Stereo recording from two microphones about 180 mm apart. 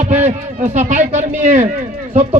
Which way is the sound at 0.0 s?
40° right (ahead or behind).